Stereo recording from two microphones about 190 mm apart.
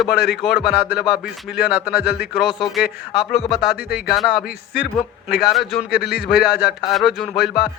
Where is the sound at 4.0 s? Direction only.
Centre (ahead or behind).